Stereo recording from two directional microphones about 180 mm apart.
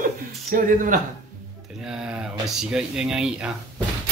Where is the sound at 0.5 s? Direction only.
50° right (ahead or behind).